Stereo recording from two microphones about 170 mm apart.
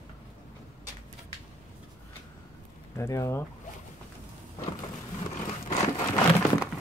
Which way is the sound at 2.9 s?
15° left (ahead or behind).